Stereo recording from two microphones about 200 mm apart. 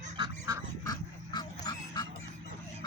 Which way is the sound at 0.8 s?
20° left (ahead or behind).